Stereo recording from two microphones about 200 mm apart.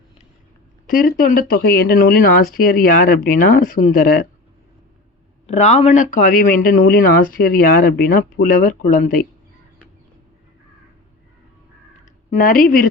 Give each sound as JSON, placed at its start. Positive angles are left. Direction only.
{"t": 0.9, "sound": "speech", "side_deg": 45}
{"t": 5.5, "sound": "speech", "side_deg": 35}
{"t": 12.3, "sound": "speech", "side_deg": 45}